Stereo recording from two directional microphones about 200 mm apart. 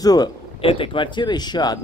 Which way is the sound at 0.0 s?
20° left (ahead or behind).